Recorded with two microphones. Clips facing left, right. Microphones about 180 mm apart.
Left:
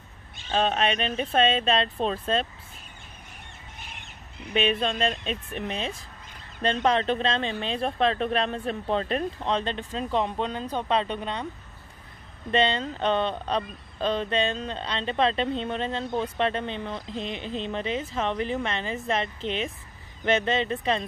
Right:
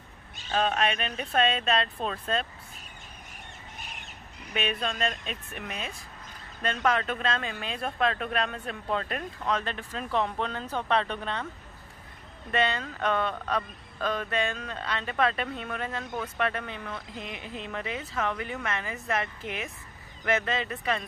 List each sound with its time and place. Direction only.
0.5 s speech: 25° left (ahead or behind)
4.6 s speech: 25° left (ahead or behind)
12.4 s speech: 25° left (ahead or behind)